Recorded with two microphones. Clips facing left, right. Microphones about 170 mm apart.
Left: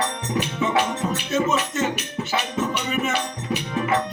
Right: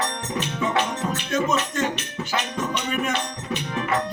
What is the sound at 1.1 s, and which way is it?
Music, 5° left (ahead or behind).